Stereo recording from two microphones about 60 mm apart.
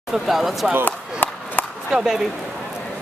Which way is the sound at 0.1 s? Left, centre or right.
Centre.